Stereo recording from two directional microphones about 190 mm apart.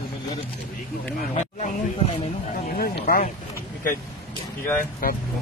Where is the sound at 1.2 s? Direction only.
40° left (ahead or behind).